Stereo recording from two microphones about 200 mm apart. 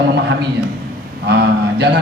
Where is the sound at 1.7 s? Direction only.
60° right (ahead or behind).